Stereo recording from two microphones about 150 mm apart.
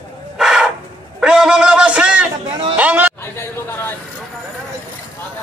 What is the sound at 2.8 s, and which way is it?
Speech, 10° right (ahead or behind).